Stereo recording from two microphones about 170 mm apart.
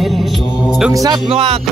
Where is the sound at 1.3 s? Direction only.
35° right (ahead or behind).